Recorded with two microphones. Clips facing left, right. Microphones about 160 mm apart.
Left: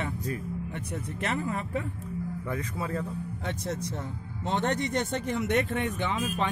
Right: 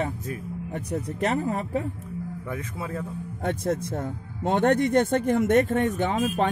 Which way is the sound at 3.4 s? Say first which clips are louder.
Right 9 dB; 50° right (ahead or behind).